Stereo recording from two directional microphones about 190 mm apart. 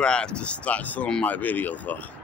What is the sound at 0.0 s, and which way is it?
Speech, 5° left (ahead or behind).